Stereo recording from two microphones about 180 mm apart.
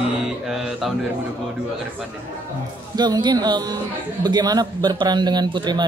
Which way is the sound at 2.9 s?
20° right (ahead or behind).